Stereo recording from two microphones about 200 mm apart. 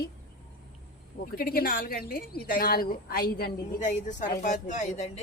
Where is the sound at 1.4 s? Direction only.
45° left (ahead or behind).